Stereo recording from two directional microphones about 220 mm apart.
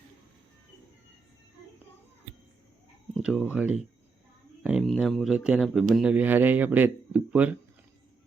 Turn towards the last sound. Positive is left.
turn(degrees=-5)  # may be behind; listen again after turning